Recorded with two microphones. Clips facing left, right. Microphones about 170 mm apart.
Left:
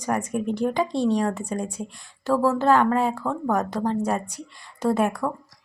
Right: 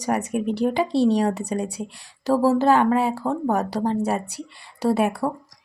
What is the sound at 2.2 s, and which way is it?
Speech, 35° right (ahead or behind).